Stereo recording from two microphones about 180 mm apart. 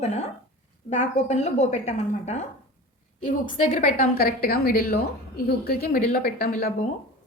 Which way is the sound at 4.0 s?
55° left (ahead or behind).